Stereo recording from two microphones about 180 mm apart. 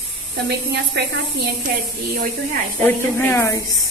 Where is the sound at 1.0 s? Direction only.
70° right (ahead or behind).